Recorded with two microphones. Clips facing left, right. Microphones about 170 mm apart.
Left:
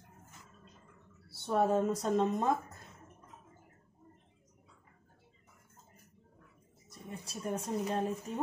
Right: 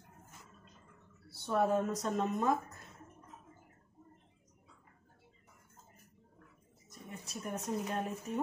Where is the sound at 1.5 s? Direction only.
30° left (ahead or behind).